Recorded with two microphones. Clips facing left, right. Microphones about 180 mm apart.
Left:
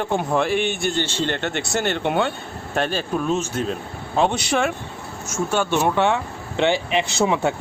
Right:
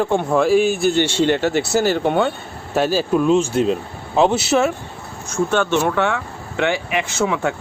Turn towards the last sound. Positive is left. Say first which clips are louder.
# even
turn(degrees=25)  # may be behind; listen again after turning